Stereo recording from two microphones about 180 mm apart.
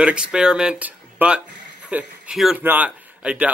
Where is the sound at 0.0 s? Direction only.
5° right (ahead or behind).